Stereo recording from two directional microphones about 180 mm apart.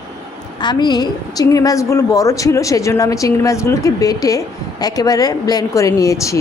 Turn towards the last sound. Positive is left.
turn(degrees=15)  # may be behind; listen again after turning